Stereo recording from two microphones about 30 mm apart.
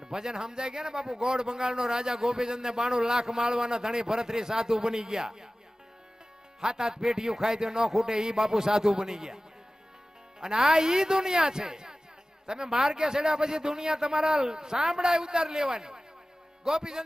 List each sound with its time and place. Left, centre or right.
0.0 s speech: right
6.6 s speech: right
10.4 s speech: right